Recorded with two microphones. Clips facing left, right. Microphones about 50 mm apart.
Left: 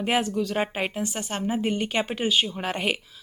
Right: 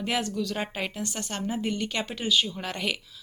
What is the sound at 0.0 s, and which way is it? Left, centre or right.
A woman's voice, centre.